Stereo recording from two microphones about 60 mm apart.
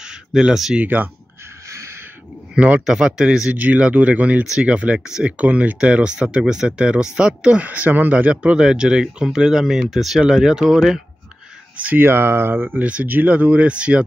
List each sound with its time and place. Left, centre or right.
0.0 s a sound: centre
0.7 s speech: right
1.7 s a sound: right
2.5 s a man's voice: right
2.9 s speech: centre
3.5 s speech: right
4.9 s speech: centre
5.4 s speech: right
7.6 s speech: right; by 11.0 s centre
11.7 s speech: right
12.0 s speech: right
12.8 s speech: right